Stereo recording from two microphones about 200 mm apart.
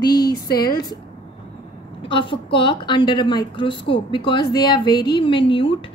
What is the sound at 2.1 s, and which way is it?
A woman's voice, 25° left (ahead or behind).